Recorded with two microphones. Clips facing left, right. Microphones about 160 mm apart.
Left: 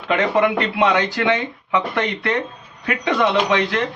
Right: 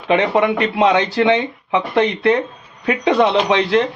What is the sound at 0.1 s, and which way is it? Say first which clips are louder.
Speech: right 2 dB; 30° right (ahead or behind).